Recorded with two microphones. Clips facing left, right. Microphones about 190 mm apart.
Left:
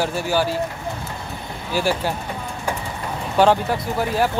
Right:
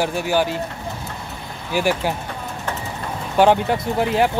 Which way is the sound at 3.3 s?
15° right (ahead or behind).